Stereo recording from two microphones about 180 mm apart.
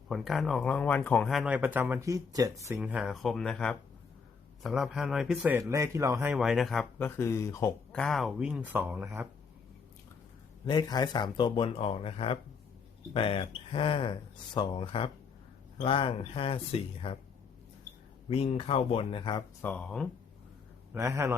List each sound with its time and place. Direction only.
0.1 s speech: centre (ahead or behind); by 2.7 s 20° right (ahead or behind)
2.7 s speech: 5° right (ahead or behind)
6.3 s speech: centre (ahead or behind)
7.0 s speech: 15° left (ahead or behind)
7.9 s speech: centre (ahead or behind)
10.7 s speech: 25° left (ahead or behind)
18.3 s speech: 35° left (ahead or behind)
19.6 s speech: 5° left (ahead or behind)
20.9 s speech: 15° right (ahead or behind)